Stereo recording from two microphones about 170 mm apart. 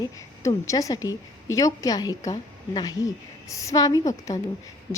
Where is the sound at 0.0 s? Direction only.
20° left (ahead or behind).